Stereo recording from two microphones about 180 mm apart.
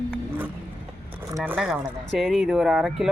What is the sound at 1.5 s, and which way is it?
Speech, centre (ahead or behind).